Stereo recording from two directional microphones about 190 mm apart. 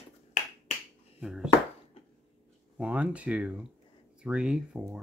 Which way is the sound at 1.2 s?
5° right (ahead or behind).